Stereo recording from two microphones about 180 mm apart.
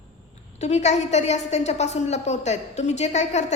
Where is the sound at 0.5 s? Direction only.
40° left (ahead or behind).